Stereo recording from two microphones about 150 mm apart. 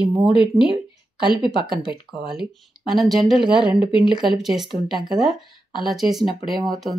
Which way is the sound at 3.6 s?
35° left (ahead or behind).